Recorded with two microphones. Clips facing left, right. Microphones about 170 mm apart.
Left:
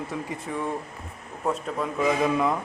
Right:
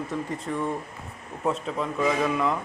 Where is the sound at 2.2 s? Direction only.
15° left (ahead or behind).